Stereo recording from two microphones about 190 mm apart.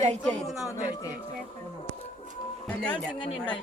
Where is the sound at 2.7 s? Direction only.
5° left (ahead or behind).